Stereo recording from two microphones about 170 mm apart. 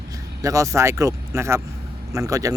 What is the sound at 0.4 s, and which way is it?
Speech, 20° right (ahead or behind).